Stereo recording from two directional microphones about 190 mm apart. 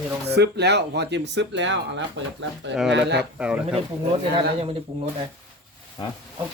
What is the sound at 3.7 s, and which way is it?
Speech, 30° right (ahead or behind).